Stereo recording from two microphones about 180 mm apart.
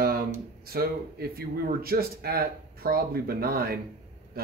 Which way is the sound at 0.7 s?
60° right (ahead or behind).